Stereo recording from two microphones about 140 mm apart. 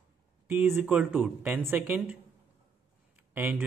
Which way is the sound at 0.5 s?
15° right (ahead or behind).